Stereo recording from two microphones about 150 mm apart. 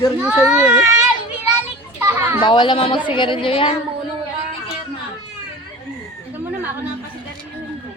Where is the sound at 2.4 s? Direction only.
30° left (ahead or behind).